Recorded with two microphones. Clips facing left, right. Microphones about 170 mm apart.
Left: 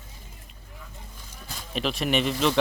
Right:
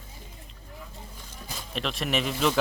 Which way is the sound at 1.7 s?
Centre (ahead or behind).